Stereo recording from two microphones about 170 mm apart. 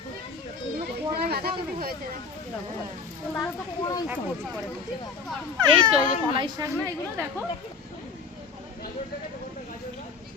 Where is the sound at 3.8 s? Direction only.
25° left (ahead or behind).